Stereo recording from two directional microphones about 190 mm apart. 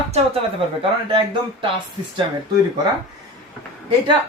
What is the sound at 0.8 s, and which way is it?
Speech, 25° right (ahead or behind).